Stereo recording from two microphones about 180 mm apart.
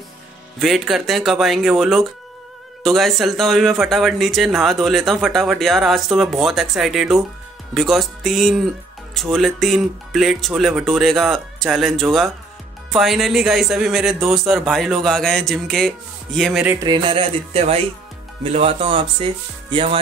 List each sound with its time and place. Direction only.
0.6 s speech: centre (ahead or behind)
16.8 s speech: 25° right (ahead or behind)